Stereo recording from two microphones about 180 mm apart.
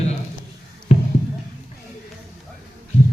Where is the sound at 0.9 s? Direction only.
35° left (ahead or behind).